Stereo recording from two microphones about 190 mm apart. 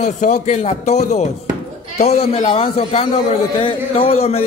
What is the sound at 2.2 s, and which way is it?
A man's voice, 30° left (ahead or behind).